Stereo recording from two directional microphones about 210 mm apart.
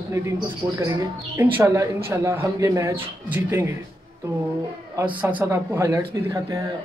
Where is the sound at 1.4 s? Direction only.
10° right (ahead or behind).